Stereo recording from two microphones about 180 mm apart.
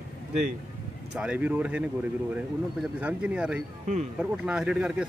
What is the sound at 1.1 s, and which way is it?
Speech, 5° right (ahead or behind).